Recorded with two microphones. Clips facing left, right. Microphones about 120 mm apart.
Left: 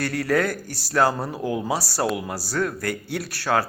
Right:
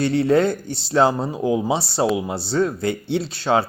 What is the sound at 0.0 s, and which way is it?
Speech, 25° right (ahead or behind).